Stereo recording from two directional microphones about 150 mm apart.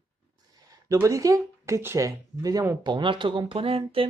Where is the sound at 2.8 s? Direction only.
30° right (ahead or behind).